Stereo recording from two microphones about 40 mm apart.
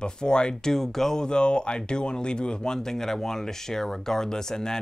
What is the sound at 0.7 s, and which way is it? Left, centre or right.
Speech, centre.